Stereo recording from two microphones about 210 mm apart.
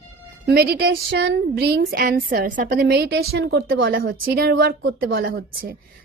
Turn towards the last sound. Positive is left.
turn(degrees=-45)  # may be behind; listen again after turning